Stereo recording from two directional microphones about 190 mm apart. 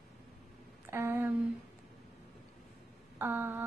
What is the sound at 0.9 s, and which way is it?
Speech, 15° right (ahead or behind).